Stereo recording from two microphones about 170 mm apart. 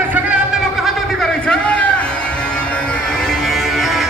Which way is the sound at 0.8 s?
5° left (ahead or behind).